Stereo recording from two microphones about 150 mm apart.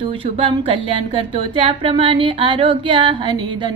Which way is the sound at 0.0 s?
35° right (ahead or behind).